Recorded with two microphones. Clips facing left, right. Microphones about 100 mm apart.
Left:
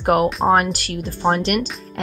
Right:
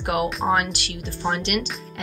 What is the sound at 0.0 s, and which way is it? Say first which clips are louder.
A woman's voice: left 6 dB; 45° left (ahead or behind).